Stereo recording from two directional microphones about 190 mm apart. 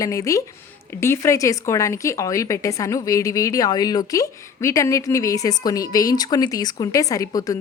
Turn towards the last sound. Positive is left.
turn(degrees=20)  # may be behind; listen again after turning